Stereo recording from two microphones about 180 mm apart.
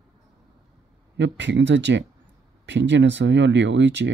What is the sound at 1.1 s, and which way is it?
Speech, 80° right.